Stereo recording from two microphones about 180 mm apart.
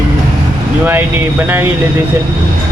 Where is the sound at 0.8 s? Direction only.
10° right (ahead or behind).